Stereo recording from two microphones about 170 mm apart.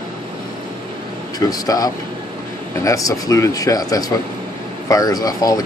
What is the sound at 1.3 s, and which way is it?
Speech, 20° left (ahead or behind).